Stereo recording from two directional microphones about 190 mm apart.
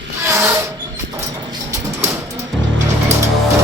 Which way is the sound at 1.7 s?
15° right (ahead or behind).